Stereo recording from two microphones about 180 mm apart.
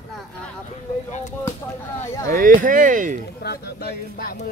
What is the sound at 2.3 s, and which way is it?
Speech, 50° right (ahead or behind).